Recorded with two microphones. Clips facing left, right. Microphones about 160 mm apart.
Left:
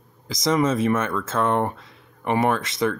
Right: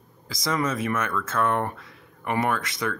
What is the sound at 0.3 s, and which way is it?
Speech, 20° left (ahead or behind).